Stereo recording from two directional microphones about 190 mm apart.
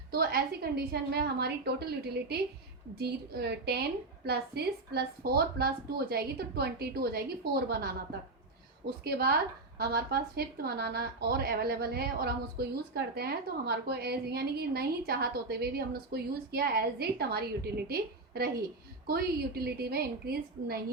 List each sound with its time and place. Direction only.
0.1 s speech: 55° right (ahead or behind)
9.0 s a woman's voice: 55° right (ahead or behind)